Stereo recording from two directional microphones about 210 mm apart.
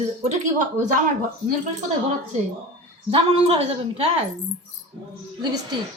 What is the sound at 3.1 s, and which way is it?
Speech, 25° right (ahead or behind).